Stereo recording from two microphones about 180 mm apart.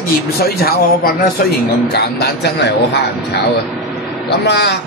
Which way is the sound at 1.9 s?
65° left (ahead or behind).